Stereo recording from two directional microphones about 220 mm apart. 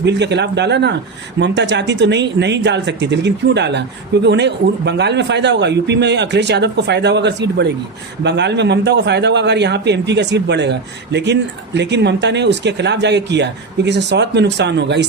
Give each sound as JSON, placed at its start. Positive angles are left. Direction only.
{"t": 0.0, "sound": "speech", "side_deg": -50}